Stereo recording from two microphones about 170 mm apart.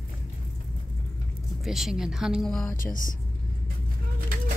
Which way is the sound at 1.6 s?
Centre (ahead or behind).